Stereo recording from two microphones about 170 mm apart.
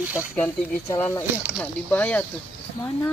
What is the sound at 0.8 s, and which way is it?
Speech, 15° left (ahead or behind).